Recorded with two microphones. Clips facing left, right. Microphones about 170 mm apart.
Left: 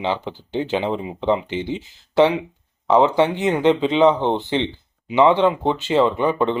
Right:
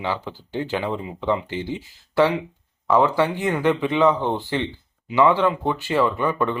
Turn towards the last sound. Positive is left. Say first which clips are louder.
# left 3 dB
turn(degrees=20)  # may be behind; listen again after turning